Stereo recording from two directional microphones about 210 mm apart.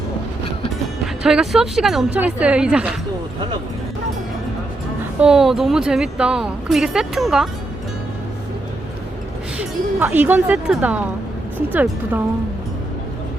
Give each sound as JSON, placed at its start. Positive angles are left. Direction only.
{"t": 1.0, "sound": "a woman's voice", "side_deg": -5}
{"t": 5.2, "sound": "a woman's voice", "side_deg": 0}
{"t": 9.6, "sound": "speech", "side_deg": -10}